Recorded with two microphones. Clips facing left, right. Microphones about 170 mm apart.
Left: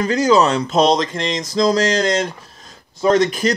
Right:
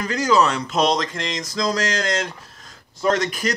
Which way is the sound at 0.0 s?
25° left (ahead or behind).